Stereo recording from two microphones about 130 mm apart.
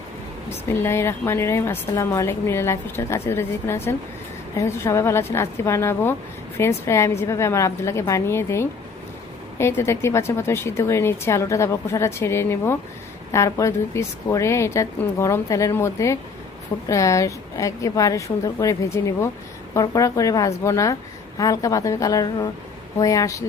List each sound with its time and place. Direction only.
0.7 s a woman's voice: 20° left (ahead or behind)